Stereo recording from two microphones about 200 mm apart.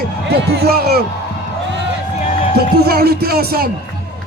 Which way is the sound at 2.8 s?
50° right (ahead or behind).